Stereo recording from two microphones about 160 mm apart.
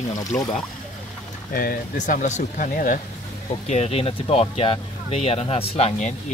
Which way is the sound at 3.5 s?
40° left (ahead or behind).